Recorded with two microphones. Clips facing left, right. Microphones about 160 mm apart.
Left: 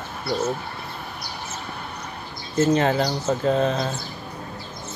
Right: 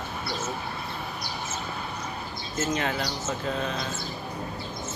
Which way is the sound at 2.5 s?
35° left (ahead or behind).